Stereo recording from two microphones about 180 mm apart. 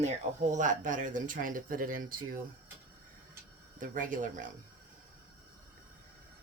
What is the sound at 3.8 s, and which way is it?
Speech, 45° right (ahead or behind).